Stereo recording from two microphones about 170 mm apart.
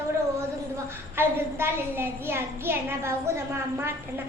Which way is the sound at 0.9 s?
15° right (ahead or behind).